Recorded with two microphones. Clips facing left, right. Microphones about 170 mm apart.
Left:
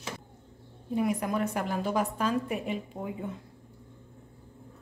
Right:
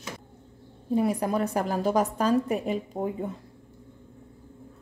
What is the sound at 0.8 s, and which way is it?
A woman's voice, 35° right (ahead or behind).